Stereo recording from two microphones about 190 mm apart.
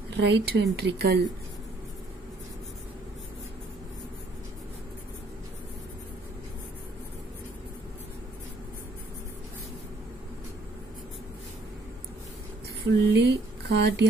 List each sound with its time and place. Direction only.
0.1 s a woman's voice: 65° right (ahead or behind)
13.0 s speech: 65° right (ahead or behind)